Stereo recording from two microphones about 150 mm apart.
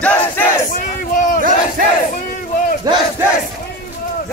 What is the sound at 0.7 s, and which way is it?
Battle cry, 60° left (ahead or behind).